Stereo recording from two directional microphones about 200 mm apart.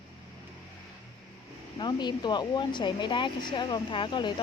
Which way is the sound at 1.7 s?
20° left (ahead or behind).